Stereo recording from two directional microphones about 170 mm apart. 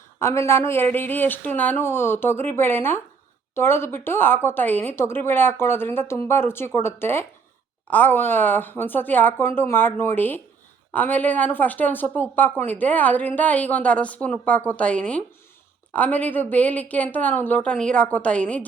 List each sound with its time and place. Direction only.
0.2 s a woman's voice: 15° left (ahead or behind)